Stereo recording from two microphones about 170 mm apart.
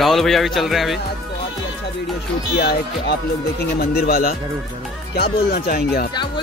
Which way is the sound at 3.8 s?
60° left (ahead or behind).